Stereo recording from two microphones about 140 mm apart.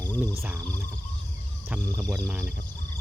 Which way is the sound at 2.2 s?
10° right (ahead or behind).